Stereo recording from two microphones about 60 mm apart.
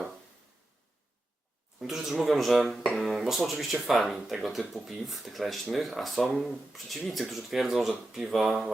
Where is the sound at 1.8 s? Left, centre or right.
Centre.